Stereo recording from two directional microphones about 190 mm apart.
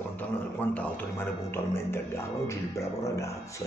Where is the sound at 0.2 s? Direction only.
10° left (ahead or behind).